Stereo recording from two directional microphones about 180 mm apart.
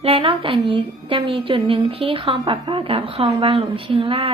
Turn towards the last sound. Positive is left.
turn(degrees=-30)  # may be behind; listen again after turning